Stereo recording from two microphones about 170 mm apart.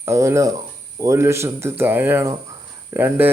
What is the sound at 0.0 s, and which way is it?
Speech, 15° right (ahead or behind).